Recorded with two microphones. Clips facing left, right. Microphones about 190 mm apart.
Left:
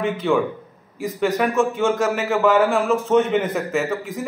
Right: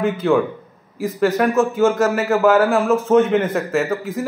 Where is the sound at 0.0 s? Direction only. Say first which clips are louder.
Right 3 dB; centre (ahead or behind).